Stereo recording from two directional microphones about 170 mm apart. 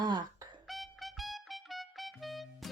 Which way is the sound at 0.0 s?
25° right (ahead or behind).